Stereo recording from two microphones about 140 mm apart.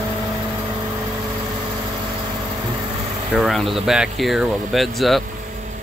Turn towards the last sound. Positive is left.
turn(degrees=0)  # may be behind; listen again after turning